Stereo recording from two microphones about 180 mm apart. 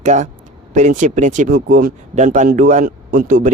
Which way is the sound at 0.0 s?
40° right (ahead or behind).